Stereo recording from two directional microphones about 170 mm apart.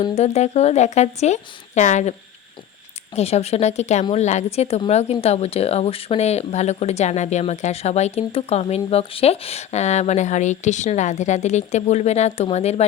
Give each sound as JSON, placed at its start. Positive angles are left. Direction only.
{"t": 0.2, "sound": "speech", "side_deg": 40}
{"t": 3.2, "sound": "speech", "side_deg": 40}